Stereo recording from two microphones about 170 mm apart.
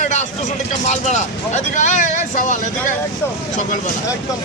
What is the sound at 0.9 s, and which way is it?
Speech, 45° left (ahead or behind).